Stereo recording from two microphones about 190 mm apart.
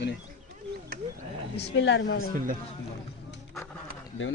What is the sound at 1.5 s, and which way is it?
Speech, 70° left (ahead or behind).